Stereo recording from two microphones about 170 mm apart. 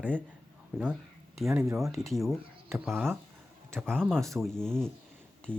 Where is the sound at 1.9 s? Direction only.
Centre (ahead or behind).